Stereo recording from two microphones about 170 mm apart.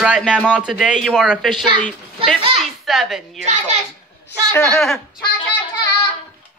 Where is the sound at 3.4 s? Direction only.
45° right (ahead or behind).